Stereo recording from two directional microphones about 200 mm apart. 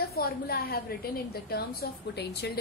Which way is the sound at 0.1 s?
50° left (ahead or behind).